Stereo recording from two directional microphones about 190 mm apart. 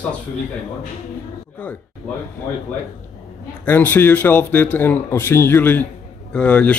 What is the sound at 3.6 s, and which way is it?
Speech, 10° left (ahead or behind).